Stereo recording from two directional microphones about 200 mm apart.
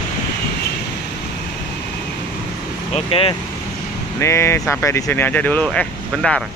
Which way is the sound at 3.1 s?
30° left (ahead or behind).